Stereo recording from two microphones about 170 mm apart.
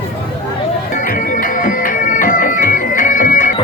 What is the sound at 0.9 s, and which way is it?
Bagpipes, 55° left (ahead or behind).